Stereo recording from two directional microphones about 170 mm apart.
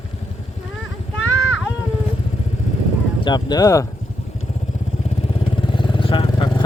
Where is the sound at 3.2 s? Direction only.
25° left (ahead or behind).